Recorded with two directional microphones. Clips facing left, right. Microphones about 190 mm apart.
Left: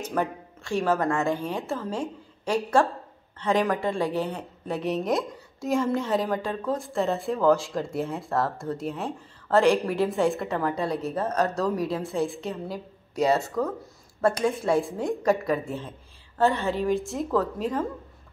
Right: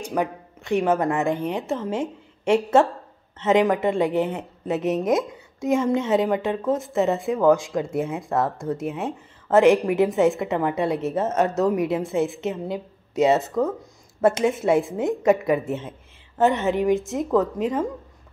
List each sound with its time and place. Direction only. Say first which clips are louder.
0.0 s a woman's voice: right 3 dB; 15° right (ahead or behind)
5.1 s a woman's voice: right 4 dB; centre (ahead or behind)
5.9 s a woman's voice: right 5 dB; 20° right (ahead or behind)
7.6 s a woman's voice: right 4 dB; centre (ahead or behind)
8.2 s a woman's voice: right 3 dB; 20° right (ahead or behind)